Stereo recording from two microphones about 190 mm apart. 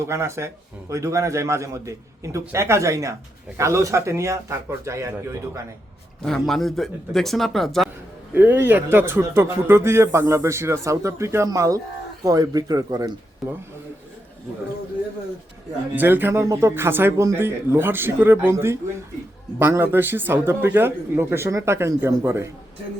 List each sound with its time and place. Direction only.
0.1 s speech: 15° right (ahead or behind)
6.2 s speech: centre (ahead or behind); by 13.1 s 20° right (ahead or behind)
16.0 s speech: 10° right (ahead or behind)